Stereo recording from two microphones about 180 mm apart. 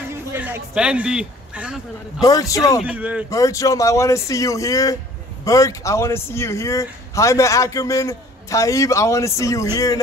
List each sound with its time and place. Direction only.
0.1 s a man's voice: 15° right (ahead or behind)
2.2 s a man's voice: 20° left (ahead or behind)
2.8 s speech: 5° right (ahead or behind)
3.3 s speech: 20° left (ahead or behind)